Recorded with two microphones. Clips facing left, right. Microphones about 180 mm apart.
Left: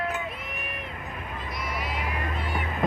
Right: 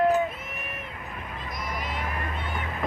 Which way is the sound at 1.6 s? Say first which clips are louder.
Even; 45° right (ahead or behind).